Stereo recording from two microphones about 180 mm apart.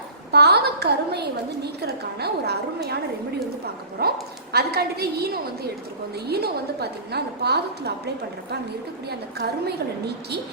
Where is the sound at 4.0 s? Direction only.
60° right (ahead or behind).